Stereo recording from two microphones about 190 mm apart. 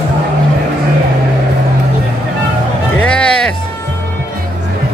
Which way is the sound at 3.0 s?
5° left (ahead or behind).